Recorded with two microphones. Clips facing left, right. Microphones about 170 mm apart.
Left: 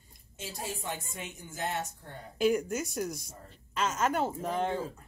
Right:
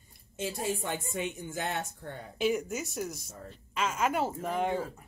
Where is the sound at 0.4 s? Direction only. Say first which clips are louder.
Right 6 dB; 55° right (ahead or behind).